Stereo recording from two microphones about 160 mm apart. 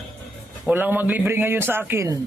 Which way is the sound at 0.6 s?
10° right (ahead or behind).